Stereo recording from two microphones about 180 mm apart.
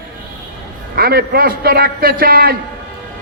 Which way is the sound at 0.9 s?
55° right (ahead or behind).